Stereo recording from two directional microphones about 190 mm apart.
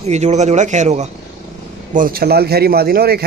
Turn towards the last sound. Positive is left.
turn(degrees=-55)  # may be behind; listen again after turning